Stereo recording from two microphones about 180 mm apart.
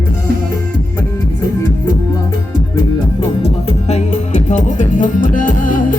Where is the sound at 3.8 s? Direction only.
40° left (ahead or behind).